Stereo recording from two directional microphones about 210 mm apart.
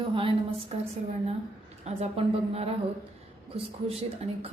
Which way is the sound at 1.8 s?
30° right (ahead or behind).